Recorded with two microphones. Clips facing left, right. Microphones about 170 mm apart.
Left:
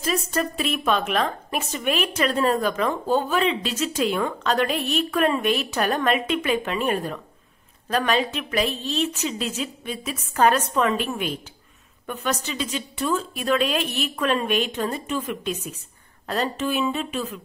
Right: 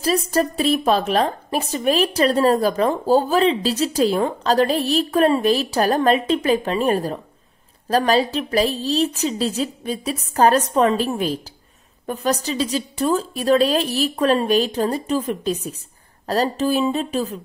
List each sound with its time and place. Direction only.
0.0 s a woman's voice: 35° right (ahead or behind)